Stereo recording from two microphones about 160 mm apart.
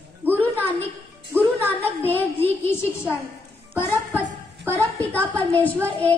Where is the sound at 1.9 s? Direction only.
10° left (ahead or behind).